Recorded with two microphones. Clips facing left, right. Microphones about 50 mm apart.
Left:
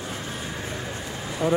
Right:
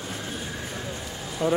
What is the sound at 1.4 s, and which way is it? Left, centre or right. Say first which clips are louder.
Speech: left 1 dB; left.